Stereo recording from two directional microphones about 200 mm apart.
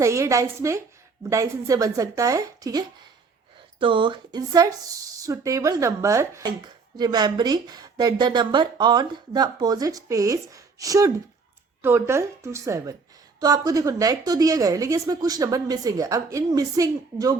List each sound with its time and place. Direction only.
0.0 s a woman's voice: 15° right (ahead or behind)